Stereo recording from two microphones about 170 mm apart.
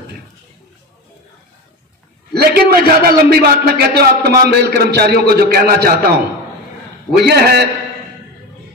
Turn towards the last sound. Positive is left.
turn(degrees=-70)  # may be behind; listen again after turning